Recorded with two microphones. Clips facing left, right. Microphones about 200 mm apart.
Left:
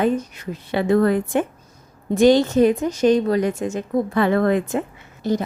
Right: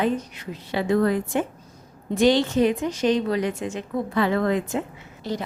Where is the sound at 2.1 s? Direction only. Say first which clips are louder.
Left 5 dB; 45° left (ahead or behind).